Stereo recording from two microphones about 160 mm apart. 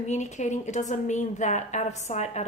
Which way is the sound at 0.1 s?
45° left (ahead or behind).